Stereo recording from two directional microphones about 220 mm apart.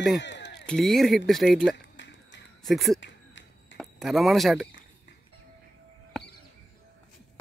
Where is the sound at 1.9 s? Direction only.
55° left (ahead or behind).